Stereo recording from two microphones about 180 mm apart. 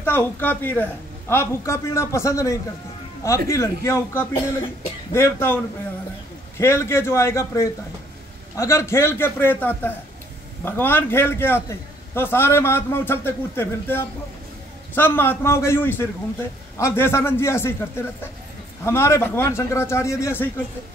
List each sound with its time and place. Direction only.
0.0 s a man's voice: 10° left (ahead or behind)
6.6 s a man's voice: 15° left (ahead or behind)